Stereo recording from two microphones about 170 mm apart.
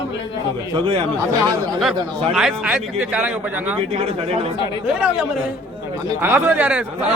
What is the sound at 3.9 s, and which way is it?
Speech, 35° right (ahead or behind).